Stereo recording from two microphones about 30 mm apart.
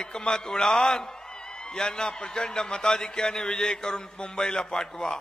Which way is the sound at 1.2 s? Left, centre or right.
Left.